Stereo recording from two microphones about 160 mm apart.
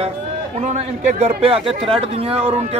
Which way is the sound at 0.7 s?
45° right (ahead or behind).